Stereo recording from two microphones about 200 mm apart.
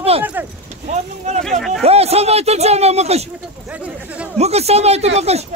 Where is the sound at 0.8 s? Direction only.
35° right (ahead or behind).